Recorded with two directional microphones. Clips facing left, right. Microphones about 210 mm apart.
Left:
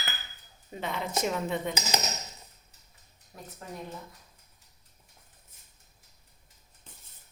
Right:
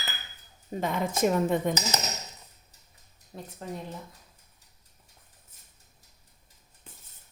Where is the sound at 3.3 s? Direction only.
25° right (ahead or behind).